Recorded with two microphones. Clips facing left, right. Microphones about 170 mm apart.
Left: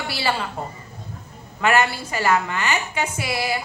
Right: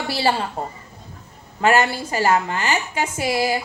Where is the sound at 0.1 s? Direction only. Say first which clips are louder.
Right 4 dB; 40° right (ahead or behind).